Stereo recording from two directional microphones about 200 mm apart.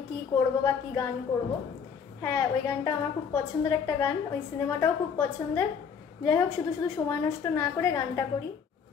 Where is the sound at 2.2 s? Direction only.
20° left (ahead or behind).